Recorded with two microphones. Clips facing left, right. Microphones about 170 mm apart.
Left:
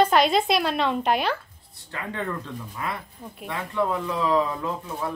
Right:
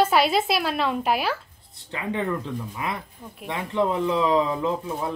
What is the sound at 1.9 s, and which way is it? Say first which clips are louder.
Speech: right 4 dB; 15° right (ahead or behind).